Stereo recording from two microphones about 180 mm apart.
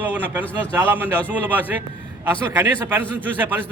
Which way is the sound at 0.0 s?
10° right (ahead or behind).